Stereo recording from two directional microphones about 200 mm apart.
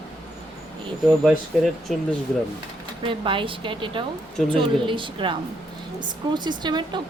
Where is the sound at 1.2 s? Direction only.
Centre (ahead or behind).